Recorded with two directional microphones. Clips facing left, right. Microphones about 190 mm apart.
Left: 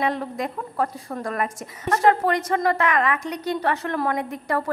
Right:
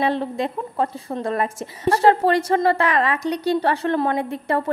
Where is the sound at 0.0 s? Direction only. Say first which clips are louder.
Right 3 dB; 30° right (ahead or behind).